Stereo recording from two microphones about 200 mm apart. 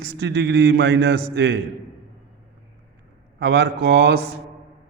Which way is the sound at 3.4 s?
55° right (ahead or behind).